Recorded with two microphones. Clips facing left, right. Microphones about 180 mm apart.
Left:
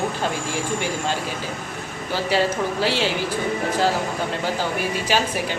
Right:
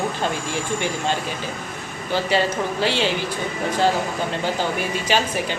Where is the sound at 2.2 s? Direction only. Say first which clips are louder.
Left 2 dB; 5° left (ahead or behind).